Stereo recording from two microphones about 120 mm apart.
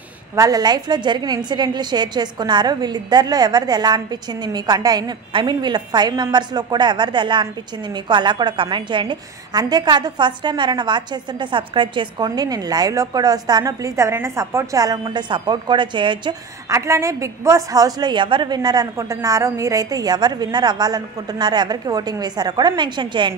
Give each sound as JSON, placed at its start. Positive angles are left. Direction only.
{"t": 0.4, "sound": "a woman's voice", "side_deg": -35}
{"t": 16.6, "sound": "a woman's voice", "side_deg": -25}